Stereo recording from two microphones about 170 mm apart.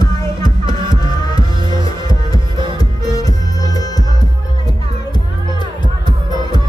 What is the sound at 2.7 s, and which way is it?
Music, 20° left (ahead or behind).